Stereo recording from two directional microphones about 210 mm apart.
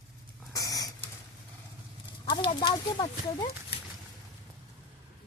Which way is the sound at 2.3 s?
25° left (ahead or behind).